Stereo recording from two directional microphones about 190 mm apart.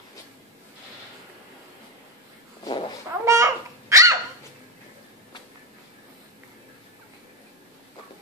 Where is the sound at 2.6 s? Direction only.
25° left (ahead or behind).